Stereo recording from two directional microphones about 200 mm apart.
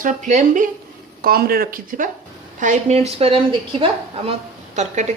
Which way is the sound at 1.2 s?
50° right (ahead or behind).